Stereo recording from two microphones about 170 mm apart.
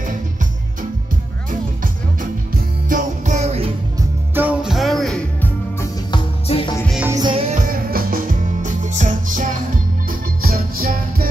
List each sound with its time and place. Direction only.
2.5 s music: 50° right (ahead or behind)
4.4 s music: 5° right (ahead or behind)
6.1 s music: 30° left (ahead or behind)
7.1 s music: 25° right (ahead or behind)
7.3 s music: 45° right (ahead or behind); by 11.2 s 60° right (ahead or behind)